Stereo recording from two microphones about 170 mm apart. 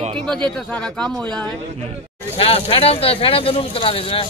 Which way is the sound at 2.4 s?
35° left (ahead or behind).